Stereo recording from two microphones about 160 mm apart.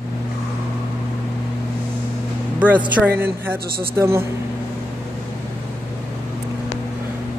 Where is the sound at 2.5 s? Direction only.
10° right (ahead or behind).